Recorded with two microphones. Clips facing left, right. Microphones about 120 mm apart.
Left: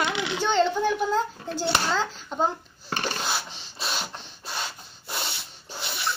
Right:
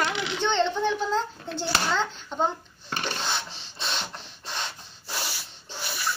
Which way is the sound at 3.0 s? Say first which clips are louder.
Left 1 dB; 5° left (ahead or behind).